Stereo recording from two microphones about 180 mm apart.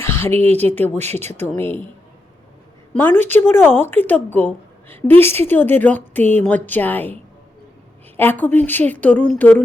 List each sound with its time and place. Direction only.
0.0 s a sound: 15° left (ahead or behind)
0.3 s speech: 35° right (ahead or behind)
0.7 s a woman's voice: 10° left (ahead or behind)
1.2 s speech: 40° right (ahead or behind)
1.5 s a woman's voice: 10° left (ahead or behind)
2.9 s a woman's voice: 10° left (ahead or behind)